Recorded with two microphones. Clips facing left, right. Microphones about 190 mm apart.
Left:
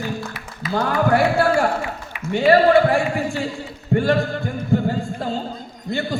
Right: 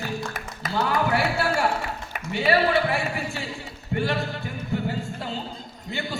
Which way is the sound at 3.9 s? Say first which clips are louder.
Left 8 dB; 50° left (ahead or behind).